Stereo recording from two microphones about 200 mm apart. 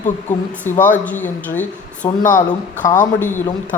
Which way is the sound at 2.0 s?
40° left (ahead or behind).